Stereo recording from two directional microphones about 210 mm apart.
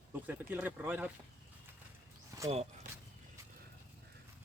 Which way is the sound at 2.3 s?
20° right (ahead or behind).